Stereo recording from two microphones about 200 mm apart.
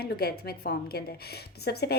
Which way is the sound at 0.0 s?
50° left (ahead or behind).